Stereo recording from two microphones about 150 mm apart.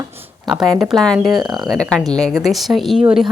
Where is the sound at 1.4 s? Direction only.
30° right (ahead or behind).